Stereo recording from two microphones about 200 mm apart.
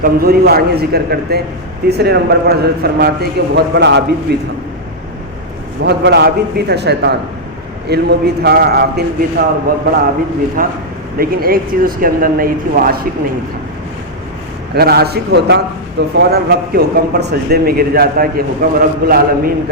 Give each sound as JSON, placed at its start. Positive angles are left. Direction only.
{"t": 0.0, "sound": "a man's voice", "side_deg": -50}
{"t": 5.8, "sound": "a man's voice", "side_deg": -55}
{"t": 14.8, "sound": "a man's voice", "side_deg": -50}